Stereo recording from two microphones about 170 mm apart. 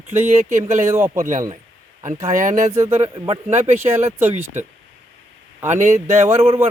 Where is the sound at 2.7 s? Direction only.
15° right (ahead or behind).